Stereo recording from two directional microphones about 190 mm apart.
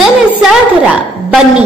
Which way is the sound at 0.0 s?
5° right (ahead or behind).